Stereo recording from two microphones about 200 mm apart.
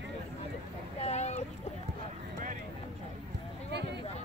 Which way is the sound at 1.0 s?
35° left (ahead or behind).